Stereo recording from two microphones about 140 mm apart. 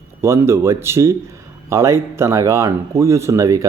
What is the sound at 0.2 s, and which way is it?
A man's voice, 20° right (ahead or behind).